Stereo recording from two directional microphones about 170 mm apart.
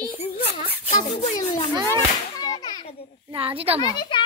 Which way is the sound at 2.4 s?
25° left (ahead or behind).